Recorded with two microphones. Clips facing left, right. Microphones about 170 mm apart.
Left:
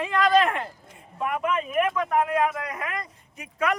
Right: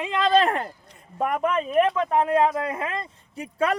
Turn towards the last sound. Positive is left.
turn(degrees=-30)  # may be behind; listen again after turning